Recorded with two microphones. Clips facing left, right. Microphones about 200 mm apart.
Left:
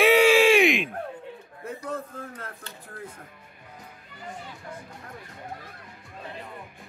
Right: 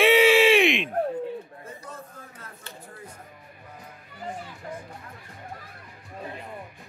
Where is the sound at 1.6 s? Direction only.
60° left (ahead or behind).